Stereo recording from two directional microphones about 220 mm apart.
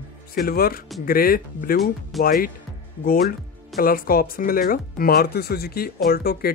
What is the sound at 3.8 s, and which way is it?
Speech, 40° left (ahead or behind).